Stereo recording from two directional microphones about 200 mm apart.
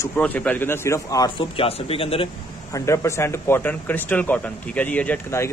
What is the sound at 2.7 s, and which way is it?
Speech, 15° left (ahead or behind).